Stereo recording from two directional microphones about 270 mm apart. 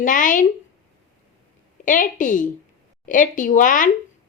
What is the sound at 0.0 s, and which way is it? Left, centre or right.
Speech, left.